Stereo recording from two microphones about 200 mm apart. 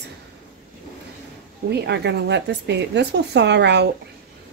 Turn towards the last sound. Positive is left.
turn(degrees=-60)  # may be behind; listen again after turning